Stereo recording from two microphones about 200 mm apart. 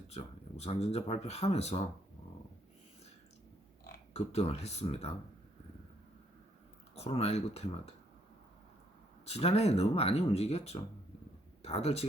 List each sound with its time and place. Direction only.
0.1 s speech: 30° left (ahead or behind)
4.1 s speech: 30° left (ahead or behind)
6.9 s speech: 30° left (ahead or behind)
9.2 s speech: 30° left (ahead or behind)